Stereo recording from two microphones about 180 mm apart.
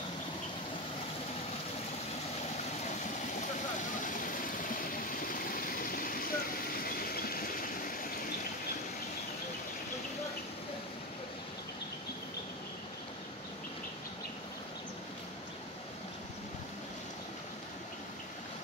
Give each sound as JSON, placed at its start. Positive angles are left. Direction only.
{"t": 4.0, "sound": "vehicle", "side_deg": 45}